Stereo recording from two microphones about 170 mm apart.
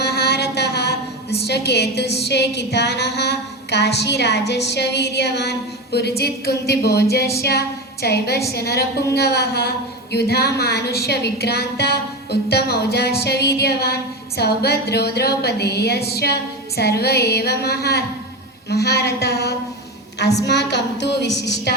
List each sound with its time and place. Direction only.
0.0 s a woman's voice: 70° left (ahead or behind)
20.4 s a woman's voice: 80° left